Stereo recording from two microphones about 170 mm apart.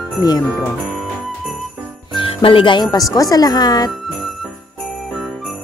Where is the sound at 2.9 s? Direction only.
20° left (ahead or behind).